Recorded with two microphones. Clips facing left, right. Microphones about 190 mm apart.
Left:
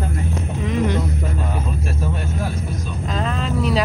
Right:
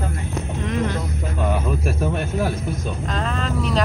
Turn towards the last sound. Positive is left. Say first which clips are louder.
# left 2 dB
turn(degrees=0)  # may be behind; listen again after turning